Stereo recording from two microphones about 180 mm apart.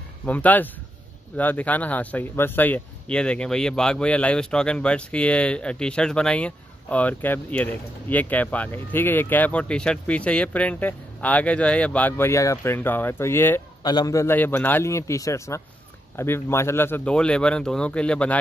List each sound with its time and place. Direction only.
0.2 s speech: 10° left (ahead or behind)